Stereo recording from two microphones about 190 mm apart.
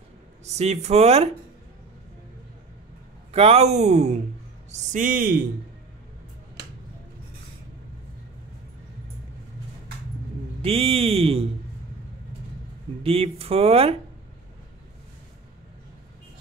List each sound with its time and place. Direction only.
0.5 s speech: 35° right (ahead or behind)
3.3 s speech: 35° right (ahead or behind)
10.6 s speech: 30° right (ahead or behind)
13.0 s speech: 30° right (ahead or behind)